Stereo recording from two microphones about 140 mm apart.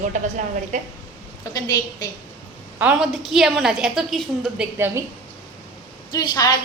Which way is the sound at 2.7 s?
5° right (ahead or behind).